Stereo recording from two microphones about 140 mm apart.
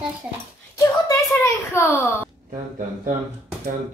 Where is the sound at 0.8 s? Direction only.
20° left (ahead or behind).